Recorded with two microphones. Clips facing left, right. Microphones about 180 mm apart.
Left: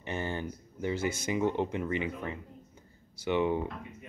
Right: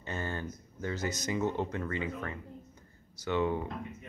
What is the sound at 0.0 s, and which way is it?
Speech, 20° left (ahead or behind).